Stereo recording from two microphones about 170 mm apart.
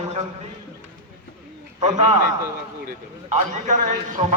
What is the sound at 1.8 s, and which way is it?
Speech, 40° right (ahead or behind).